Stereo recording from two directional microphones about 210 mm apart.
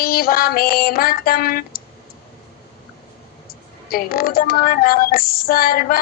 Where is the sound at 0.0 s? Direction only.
45° left (ahead or behind).